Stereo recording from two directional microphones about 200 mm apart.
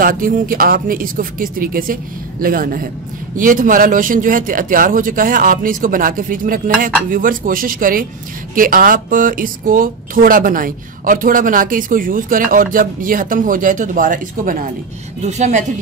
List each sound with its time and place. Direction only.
0.0 s a woman's voice: 45° right (ahead or behind)